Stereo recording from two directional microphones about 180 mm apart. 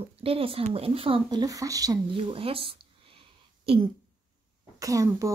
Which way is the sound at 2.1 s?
30° right (ahead or behind).